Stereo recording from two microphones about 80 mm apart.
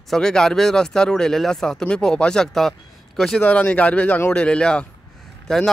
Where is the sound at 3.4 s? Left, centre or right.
Centre.